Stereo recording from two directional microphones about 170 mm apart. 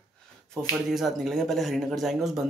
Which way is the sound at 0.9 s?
Centre (ahead or behind).